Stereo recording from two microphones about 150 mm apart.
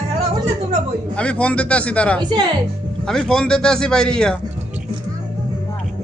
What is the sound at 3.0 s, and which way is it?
A man's voice, 5° left (ahead or behind).